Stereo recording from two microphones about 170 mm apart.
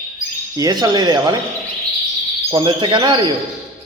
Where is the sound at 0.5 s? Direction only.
25° right (ahead or behind).